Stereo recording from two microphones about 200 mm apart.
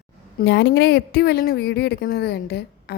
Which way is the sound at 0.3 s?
65° left (ahead or behind).